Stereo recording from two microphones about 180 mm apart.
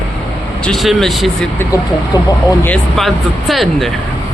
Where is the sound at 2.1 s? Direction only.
20° left (ahead or behind).